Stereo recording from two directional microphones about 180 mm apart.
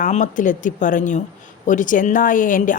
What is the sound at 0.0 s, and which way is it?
A woman's voice, 45° left (ahead or behind).